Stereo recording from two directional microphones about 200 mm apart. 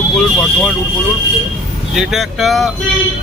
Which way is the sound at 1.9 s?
Centre (ahead or behind).